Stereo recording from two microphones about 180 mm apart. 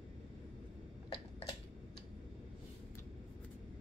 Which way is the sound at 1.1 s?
30° left (ahead or behind).